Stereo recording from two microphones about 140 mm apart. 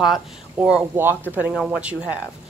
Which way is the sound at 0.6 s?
5° right (ahead or behind).